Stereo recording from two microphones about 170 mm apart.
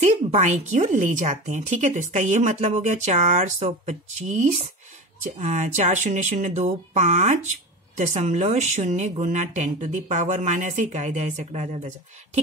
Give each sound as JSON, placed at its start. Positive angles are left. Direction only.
{"t": 0.0, "sound": "speech", "side_deg": -40}